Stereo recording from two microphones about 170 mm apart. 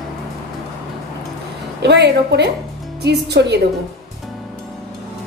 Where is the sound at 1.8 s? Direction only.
90° right.